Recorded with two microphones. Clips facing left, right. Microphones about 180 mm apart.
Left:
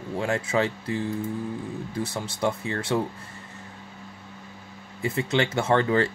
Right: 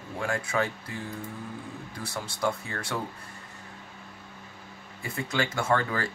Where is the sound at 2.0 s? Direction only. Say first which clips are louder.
Left 3 dB; 20° left (ahead or behind).